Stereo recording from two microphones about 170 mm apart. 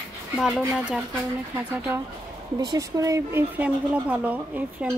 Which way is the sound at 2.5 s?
20° right (ahead or behind).